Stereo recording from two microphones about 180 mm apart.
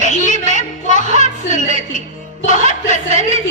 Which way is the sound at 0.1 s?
45° left (ahead or behind).